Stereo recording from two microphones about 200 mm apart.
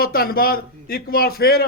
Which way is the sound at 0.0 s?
50° left (ahead or behind).